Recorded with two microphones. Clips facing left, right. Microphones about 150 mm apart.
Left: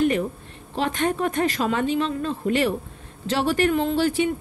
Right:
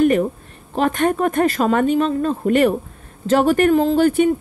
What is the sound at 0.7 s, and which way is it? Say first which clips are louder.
A woman's voice: right 6 dB; 50° right (ahead or behind).